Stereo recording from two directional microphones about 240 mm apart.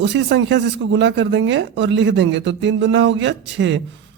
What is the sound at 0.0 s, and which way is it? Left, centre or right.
Speech, right.